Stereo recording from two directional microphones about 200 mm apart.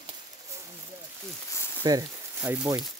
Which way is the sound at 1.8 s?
15° right (ahead or behind).